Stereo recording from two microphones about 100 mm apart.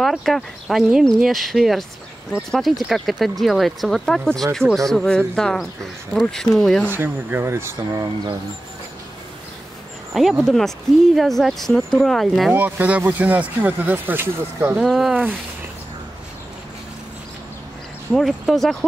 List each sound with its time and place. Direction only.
0.0 s speech: centre (ahead or behind)
6.9 s speech: 20° right (ahead or behind)
10.1 s speech: centre (ahead or behind)
12.5 s speech: 20° right (ahead or behind)
14.8 s speech: 5° right (ahead or behind)
18.1 s speech: centre (ahead or behind)